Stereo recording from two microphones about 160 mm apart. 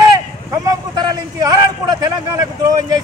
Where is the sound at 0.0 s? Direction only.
20° right (ahead or behind).